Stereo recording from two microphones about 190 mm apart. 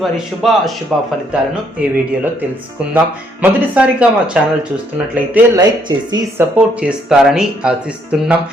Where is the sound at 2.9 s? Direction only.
5° right (ahead or behind).